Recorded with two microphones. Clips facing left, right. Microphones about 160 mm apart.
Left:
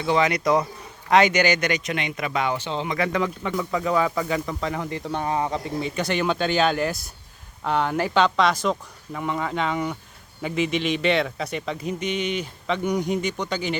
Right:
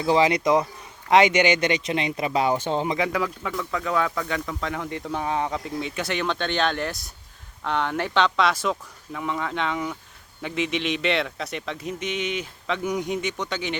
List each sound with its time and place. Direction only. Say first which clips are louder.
0.0 s speech: right 1 dB; 30° right (ahead or behind)
2.6 s speech: right 3 dB; 50° right (ahead or behind)
3.0 s speech: left 1 dB; 5° right (ahead or behind)